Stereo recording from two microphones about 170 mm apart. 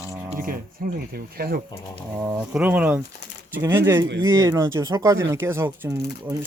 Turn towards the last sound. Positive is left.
turn(degrees=-15)  # may be behind; listen again after turning